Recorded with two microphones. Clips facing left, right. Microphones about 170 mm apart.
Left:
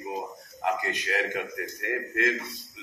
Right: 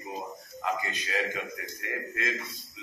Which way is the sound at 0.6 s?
65° left (ahead or behind).